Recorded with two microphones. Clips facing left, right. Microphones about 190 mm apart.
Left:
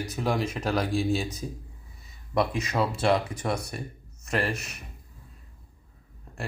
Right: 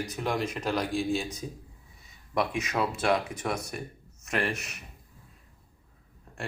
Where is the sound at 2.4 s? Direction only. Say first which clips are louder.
Left 2 dB; centre (ahead or behind).